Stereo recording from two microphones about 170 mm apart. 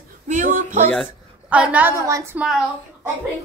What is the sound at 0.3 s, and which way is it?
Music, 50° right (ahead or behind).